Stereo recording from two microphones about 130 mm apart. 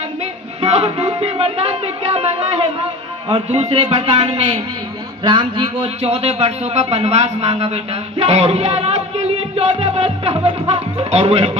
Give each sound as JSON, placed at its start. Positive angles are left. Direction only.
{"t": 0.6, "sound": "music", "side_deg": -55}
{"t": 0.9, "sound": "speech", "side_deg": -50}
{"t": 5.2, "sound": "a man's voice", "side_deg": -40}